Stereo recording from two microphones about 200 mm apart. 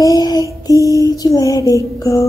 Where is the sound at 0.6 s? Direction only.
15° left (ahead or behind).